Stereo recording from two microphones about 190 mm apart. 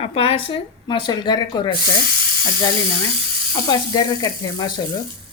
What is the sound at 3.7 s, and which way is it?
Speech, 20° left (ahead or behind).